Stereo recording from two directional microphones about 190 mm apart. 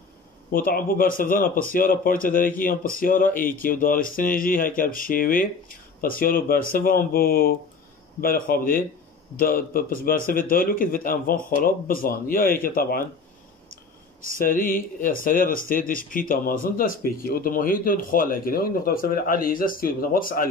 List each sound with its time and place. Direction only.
0.5 s speech: 50° left (ahead or behind)
14.7 s speech: 45° left (ahead or behind)